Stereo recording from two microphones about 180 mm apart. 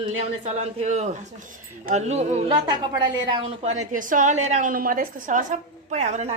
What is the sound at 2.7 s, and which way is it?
A woman's voice, 25° right (ahead or behind).